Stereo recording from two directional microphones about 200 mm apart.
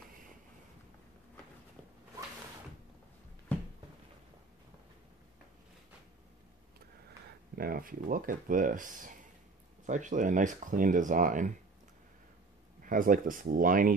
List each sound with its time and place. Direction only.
7.5 s speech: 45° right (ahead or behind)
12.8 s speech: 45° right (ahead or behind)